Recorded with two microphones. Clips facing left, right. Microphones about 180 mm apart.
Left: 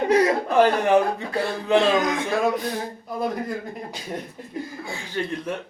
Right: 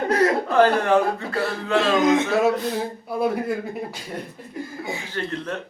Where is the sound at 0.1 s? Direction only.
15° left (ahead or behind).